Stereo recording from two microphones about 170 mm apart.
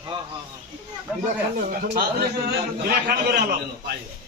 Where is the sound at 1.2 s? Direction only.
50° right (ahead or behind).